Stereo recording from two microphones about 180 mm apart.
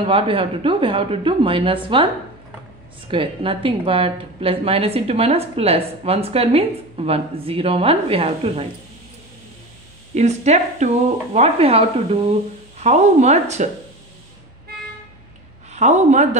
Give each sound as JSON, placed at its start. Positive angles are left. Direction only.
{"t": 0.0, "sound": "a woman's voice", "side_deg": -30}
{"t": 3.1, "sound": "a woman's voice", "side_deg": -30}
{"t": 10.1, "sound": "a woman's voice", "side_deg": -40}
{"t": 15.7, "sound": "a woman's voice", "side_deg": -40}